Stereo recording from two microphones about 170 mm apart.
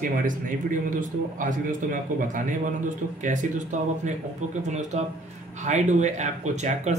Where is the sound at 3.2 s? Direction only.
50° right (ahead or behind).